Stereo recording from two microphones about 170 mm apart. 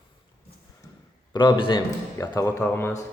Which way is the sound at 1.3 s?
30° left (ahead or behind).